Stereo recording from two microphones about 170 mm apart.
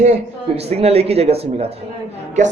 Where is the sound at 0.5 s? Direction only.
35° right (ahead or behind).